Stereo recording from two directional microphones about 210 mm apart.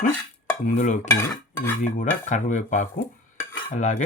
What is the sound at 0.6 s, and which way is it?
Speech, 35° left (ahead or behind).